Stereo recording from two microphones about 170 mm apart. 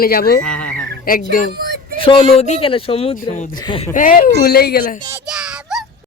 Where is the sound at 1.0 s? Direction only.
55° left (ahead or behind).